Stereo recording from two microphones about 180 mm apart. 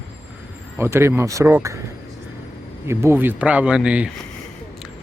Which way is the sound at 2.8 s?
15° right (ahead or behind).